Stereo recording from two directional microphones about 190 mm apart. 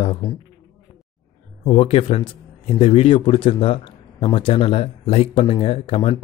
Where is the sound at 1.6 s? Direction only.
30° left (ahead or behind).